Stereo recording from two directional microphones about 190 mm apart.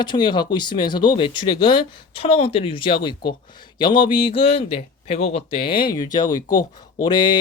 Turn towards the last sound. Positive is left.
turn(degrees=25)  # may be behind; listen again after turning